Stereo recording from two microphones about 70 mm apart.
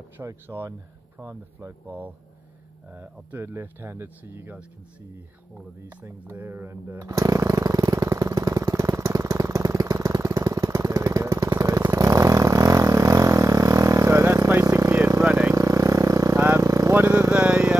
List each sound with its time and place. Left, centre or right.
0.2 s speech: right
1.9 s speech: right
6.0 s chainsaw: right
10.4 s jackhammer: right
11.9 s vehicle: right
15.2 s vehicle: right
15.5 s vehicle: right
16.3 s vehicle: right
16.6 s vehicle: right
16.9 s vehicle: right
17.2 s vehicle: centre